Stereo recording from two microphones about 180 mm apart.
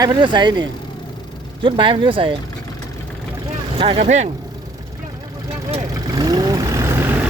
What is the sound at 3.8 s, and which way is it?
Speech, 35° right (ahead or behind).